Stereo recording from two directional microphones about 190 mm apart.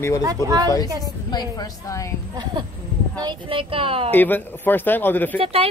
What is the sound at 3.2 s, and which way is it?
Speech, 25° right (ahead or behind).